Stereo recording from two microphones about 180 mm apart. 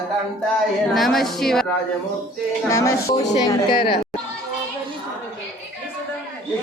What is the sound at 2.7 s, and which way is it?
Speech, 15° left (ahead or behind).